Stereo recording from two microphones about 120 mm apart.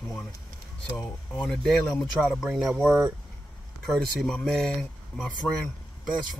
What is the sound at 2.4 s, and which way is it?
Speech, 5° right (ahead or behind).